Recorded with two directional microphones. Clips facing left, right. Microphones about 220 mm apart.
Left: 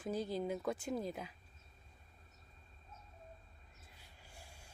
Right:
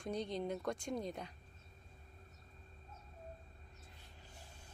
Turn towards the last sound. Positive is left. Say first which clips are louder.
# even
turn(degrees=10)  # may be behind; listen again after turning